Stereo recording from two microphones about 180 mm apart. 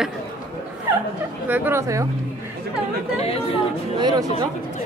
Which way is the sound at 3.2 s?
35° left (ahead or behind).